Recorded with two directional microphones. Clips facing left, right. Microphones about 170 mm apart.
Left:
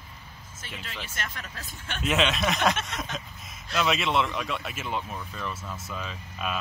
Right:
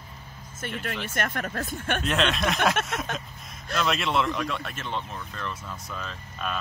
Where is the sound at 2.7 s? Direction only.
55° right (ahead or behind).